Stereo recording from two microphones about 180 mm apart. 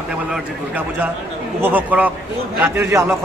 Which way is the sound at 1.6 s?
10° right (ahead or behind).